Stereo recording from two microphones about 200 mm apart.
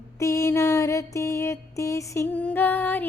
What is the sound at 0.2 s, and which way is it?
Mantra, 15° left (ahead or behind).